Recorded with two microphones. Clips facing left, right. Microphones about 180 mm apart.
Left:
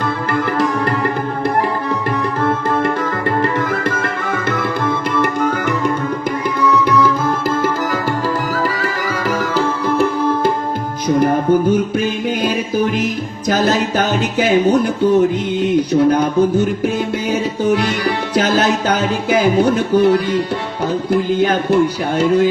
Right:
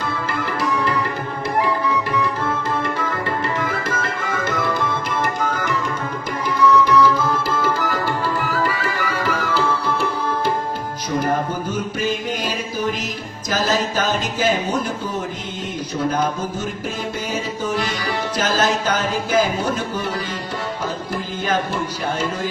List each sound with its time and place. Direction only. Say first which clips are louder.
0.0 s music: left 6 dB; 60° left (ahead or behind)
1.9 s tabla: left 2 dB; 55° left (ahead or behind)
6.6 s music: even; 55° left (ahead or behind)
11.7 s music: left 7 dB; 55° left (ahead or behind)
13.5 s a sound: left 5 dB; 60° left (ahead or behind)
15.9 s speech: left 8 dB; 60° left (ahead or behind)
17.7 s music: left 8 dB; 65° left (ahead or behind)